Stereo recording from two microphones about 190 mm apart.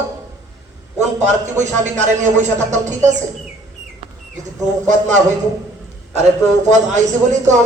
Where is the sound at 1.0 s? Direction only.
40° right (ahead or behind).